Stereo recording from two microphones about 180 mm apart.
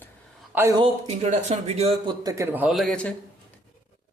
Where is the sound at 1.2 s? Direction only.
40° right (ahead or behind).